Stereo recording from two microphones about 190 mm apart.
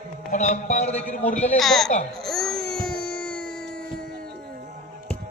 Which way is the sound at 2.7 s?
50° right (ahead or behind).